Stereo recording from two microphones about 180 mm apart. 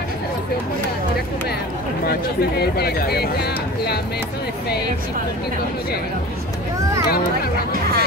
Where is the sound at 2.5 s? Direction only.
60° left (ahead or behind).